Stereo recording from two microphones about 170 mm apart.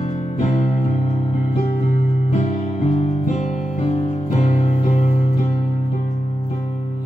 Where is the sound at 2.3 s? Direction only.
35° left (ahead or behind).